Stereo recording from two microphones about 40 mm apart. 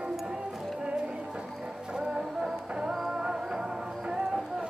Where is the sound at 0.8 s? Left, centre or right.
Right.